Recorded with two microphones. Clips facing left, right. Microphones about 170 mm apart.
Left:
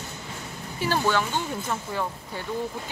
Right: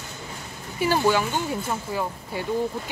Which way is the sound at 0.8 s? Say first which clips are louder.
Right 3 dB; 10° right (ahead or behind).